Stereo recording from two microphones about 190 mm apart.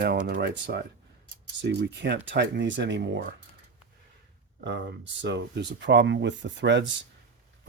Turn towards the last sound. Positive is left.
turn(degrees=-70)  # may be behind; listen again after turning